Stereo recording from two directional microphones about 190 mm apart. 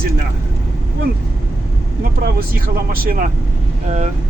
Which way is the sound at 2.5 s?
50° right (ahead or behind).